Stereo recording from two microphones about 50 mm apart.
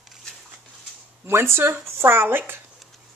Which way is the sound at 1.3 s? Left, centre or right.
Right.